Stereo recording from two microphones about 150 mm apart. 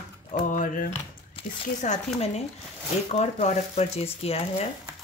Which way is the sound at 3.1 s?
50° left (ahead or behind).